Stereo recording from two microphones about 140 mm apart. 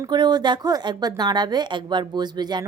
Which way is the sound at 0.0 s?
30° right (ahead or behind).